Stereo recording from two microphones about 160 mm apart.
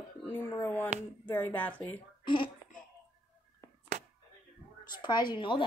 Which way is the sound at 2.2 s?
30° left (ahead or behind).